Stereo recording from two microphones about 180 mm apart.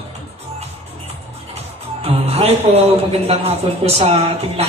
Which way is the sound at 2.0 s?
35° right (ahead or behind).